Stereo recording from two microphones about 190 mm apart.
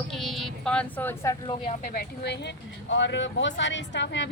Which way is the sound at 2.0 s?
60° left (ahead or behind).